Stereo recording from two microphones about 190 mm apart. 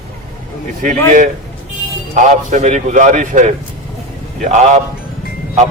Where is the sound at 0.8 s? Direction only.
40° right (ahead or behind).